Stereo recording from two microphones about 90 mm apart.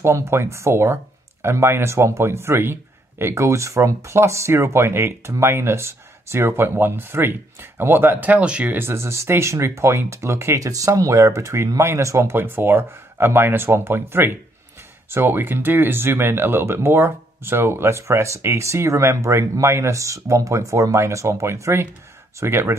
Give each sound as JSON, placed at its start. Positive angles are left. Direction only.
{"t": 0.0, "sound": "a man's voice", "side_deg": -30}